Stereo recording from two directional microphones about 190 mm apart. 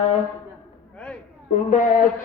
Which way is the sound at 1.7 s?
40° left (ahead or behind).